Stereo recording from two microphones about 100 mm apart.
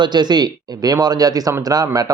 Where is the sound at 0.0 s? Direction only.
45° right (ahead or behind).